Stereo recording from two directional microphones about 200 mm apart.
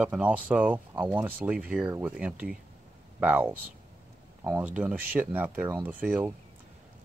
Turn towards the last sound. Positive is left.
turn(degrees=-10)  # may be behind; listen again after turning